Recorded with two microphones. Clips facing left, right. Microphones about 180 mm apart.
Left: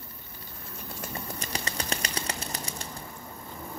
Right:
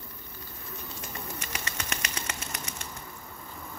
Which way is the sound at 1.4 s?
35° left (ahead or behind).